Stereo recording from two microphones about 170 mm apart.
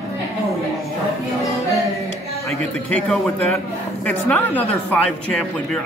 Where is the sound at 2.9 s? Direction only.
5° left (ahead or behind).